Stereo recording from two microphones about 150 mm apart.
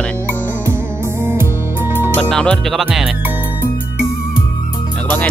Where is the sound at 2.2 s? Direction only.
5° left (ahead or behind).